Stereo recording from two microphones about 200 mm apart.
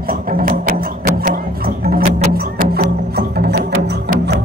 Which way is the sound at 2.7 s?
50° right (ahead or behind).